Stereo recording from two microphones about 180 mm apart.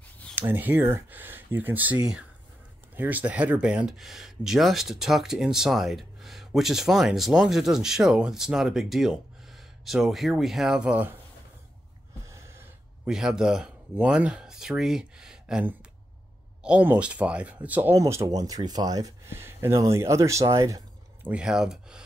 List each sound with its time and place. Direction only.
0.4 s speech: 10° right (ahead or behind)
12.3 s sigh: 15° right (ahead or behind)
13.1 s speech: 5° right (ahead or behind)
21.3 s speech: 5° right (ahead or behind)